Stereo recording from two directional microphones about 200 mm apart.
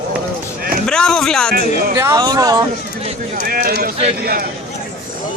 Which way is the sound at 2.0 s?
15° right (ahead or behind).